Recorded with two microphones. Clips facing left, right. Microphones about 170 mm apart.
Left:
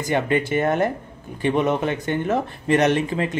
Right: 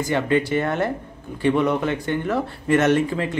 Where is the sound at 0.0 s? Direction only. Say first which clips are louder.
Right 1 dB; 20° left (ahead or behind).